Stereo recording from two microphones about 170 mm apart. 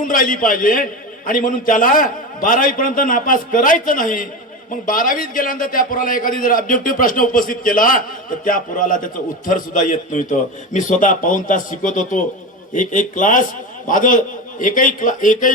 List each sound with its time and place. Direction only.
0.0 s a man's voice: 55° left (ahead or behind)